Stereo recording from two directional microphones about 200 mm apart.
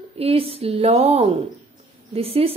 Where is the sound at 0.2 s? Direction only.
30° right (ahead or behind).